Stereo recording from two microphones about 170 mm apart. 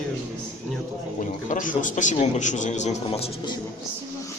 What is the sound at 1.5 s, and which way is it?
A man's voice, 50° left (ahead or behind).